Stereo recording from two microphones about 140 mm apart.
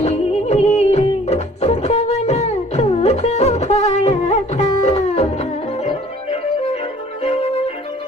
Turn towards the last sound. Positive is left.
turn(degrees=45)  # may be behind; listen again after turning